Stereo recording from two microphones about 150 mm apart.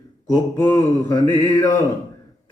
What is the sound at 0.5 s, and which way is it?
Mantra, 15° left (ahead or behind).